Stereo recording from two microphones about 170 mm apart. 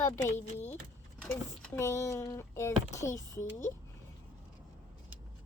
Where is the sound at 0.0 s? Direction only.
10° left (ahead or behind).